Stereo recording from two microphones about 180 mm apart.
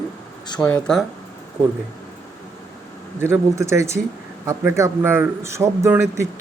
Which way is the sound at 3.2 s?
15° right (ahead or behind).